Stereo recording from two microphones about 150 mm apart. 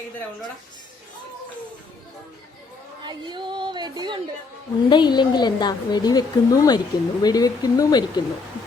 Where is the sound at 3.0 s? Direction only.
30° right (ahead or behind).